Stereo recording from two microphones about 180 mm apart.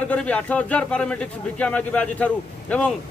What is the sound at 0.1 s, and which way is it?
A man's voice, 5° left (ahead or behind).